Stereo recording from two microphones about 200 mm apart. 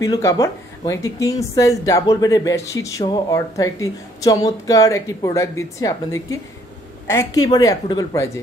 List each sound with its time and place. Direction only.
0.0 s a woman's voice: 15° left (ahead or behind)